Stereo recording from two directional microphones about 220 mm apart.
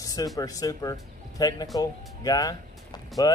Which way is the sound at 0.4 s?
15° left (ahead or behind).